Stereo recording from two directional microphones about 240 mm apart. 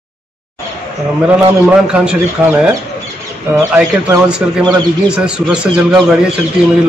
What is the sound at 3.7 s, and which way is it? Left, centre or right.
Speech, centre.